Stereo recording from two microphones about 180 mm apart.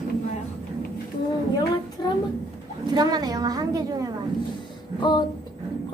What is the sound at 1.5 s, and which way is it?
Child singing, 20° left (ahead or behind).